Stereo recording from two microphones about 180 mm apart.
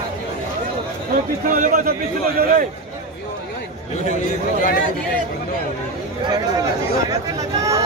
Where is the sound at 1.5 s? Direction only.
50° right (ahead or behind).